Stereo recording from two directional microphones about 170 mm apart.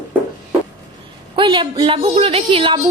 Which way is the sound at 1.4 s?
30° right (ahead or behind).